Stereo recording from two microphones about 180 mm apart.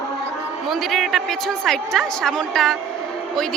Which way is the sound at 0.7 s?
Centre (ahead or behind).